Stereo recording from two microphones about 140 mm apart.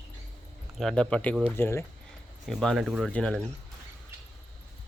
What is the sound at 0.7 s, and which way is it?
Speech, 5° left (ahead or behind).